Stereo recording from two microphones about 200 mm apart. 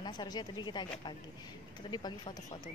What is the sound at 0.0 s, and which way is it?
A woman's voice, 20° left (ahead or behind).